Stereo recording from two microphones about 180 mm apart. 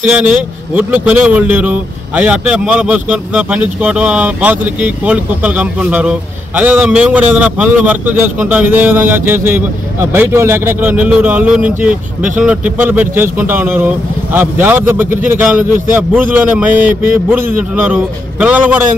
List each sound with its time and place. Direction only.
0.0 s speech: 5° right (ahead or behind)